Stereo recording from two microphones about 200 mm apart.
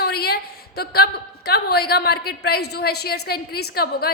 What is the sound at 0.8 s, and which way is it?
A woman's voice, 55° left (ahead or behind).